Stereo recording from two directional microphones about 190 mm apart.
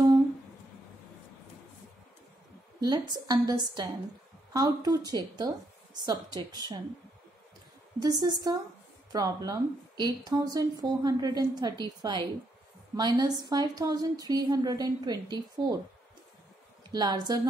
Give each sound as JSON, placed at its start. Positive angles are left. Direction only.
{"t": 2.8, "sound": "speech", "side_deg": -20}
{"t": 8.0, "sound": "speech", "side_deg": -20}
{"t": 16.9, "sound": "speech", "side_deg": -20}